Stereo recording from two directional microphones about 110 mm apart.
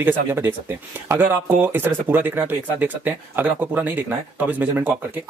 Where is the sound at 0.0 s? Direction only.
20° right (ahead or behind).